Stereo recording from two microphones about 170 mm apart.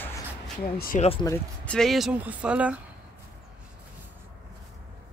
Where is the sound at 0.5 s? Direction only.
50° left (ahead or behind).